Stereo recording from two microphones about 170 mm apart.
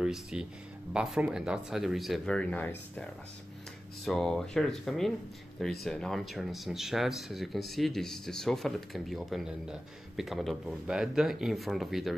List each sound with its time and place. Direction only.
0.0 s speech: 5° right (ahead or behind)
4.0 s speech: centre (ahead or behind)